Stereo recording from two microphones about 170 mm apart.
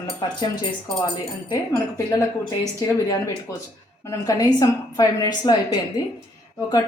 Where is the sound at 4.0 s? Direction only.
20° left (ahead or behind).